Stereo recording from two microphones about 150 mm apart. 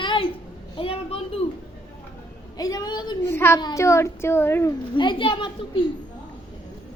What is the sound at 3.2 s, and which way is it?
A child's voice, 15° left (ahead or behind).